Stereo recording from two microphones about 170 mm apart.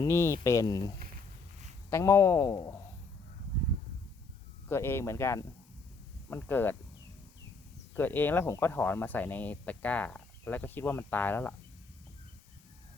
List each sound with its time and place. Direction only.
0.0 s speech: 15° left (ahead or behind)
4.7 s speech: 15° left (ahead or behind)
7.9 s speech: 10° left (ahead or behind)